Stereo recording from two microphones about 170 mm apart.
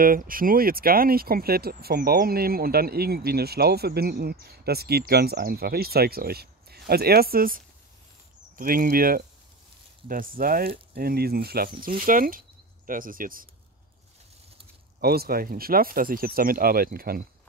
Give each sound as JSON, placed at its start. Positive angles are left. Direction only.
{"t": 0.0, "sound": "speech", "side_deg": -55}
{"t": 15.0, "sound": "speech", "side_deg": -65}